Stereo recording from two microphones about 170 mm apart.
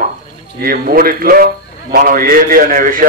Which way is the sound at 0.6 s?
55° right (ahead or behind).